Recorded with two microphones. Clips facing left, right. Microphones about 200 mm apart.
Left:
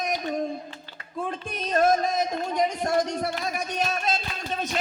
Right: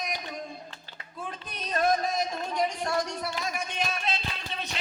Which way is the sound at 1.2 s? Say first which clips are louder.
Left 5 dB; 45° left (ahead or behind).